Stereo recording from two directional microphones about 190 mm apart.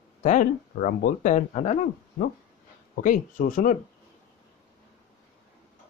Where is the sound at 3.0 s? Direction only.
45° left (ahead or behind).